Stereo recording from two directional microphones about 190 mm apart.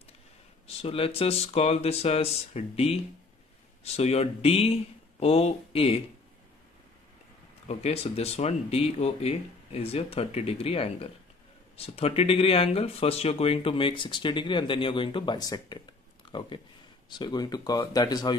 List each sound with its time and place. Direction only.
0.8 s speech: 30° left (ahead or behind)
7.6 s speech: 35° left (ahead or behind)